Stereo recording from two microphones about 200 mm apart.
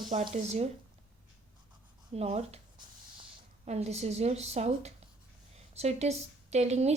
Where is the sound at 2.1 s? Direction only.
30° right (ahead or behind).